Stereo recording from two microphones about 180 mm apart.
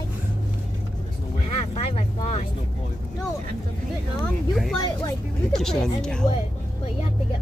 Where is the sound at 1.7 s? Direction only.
35° left (ahead or behind).